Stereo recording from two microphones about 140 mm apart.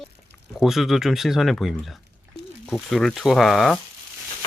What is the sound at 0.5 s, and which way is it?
Speech, centre (ahead or behind).